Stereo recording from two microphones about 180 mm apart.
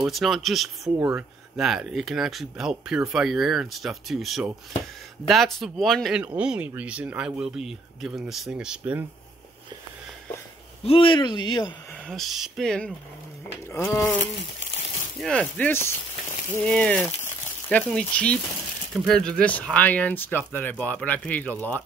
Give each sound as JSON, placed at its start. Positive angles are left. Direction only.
{"t": 0.0, "sound": "speech", "side_deg": 0}
{"t": 10.8, "sound": "speech", "side_deg": 30}
{"t": 12.1, "sound": "speech", "side_deg": 0}
{"t": 13.8, "sound": "speech", "side_deg": 15}
{"t": 15.1, "sound": "speech", "side_deg": 5}